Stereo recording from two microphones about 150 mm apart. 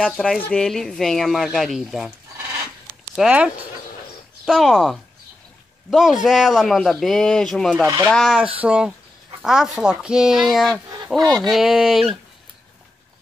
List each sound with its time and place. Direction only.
0.0 s speech: centre (ahead or behind)
3.2 s speech: 10° right (ahead or behind)
7.8 s speech: 25° right (ahead or behind)
8.1 s speech: centre (ahead or behind)